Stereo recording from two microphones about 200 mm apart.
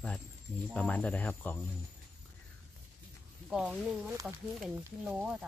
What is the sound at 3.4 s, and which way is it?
Speech, centre (ahead or behind).